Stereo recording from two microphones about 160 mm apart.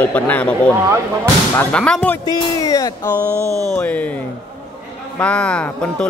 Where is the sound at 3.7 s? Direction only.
10° left (ahead or behind).